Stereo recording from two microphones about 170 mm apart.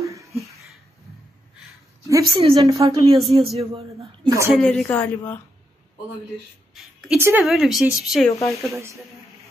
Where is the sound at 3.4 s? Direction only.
35° right (ahead or behind).